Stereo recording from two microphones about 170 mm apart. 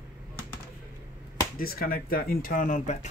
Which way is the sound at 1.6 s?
60° left (ahead or behind).